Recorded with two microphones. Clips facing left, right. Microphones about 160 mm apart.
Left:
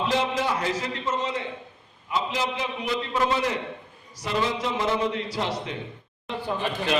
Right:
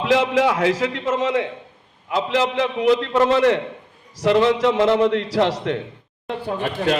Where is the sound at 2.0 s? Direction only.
70° right (ahead or behind).